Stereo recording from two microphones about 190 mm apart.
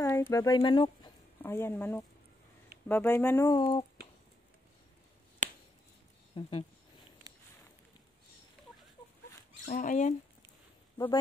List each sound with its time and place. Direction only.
0.0 s speech: 10° left (ahead or behind)
1.4 s speech: 10° left (ahead or behind)
5.4 s finger snapping: 40° right (ahead or behind)
6.4 s speech: 25° left (ahead or behind)
9.7 s speech: 40° left (ahead or behind)